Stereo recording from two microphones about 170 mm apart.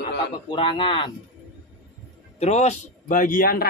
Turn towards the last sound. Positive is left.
turn(degrees=55)  # may be behind; listen again after turning